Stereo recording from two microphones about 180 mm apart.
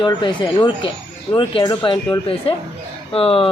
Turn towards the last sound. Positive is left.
turn(degrees=30)  # may be behind; listen again after turning